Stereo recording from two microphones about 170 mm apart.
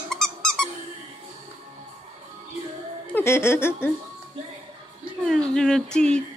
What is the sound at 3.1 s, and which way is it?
Speech, 15° left (ahead or behind).